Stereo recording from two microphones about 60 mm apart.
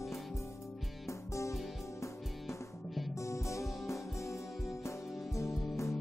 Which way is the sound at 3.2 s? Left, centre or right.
Left.